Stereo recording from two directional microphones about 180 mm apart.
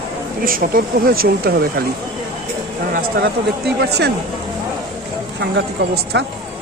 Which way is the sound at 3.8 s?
65° right (ahead or behind).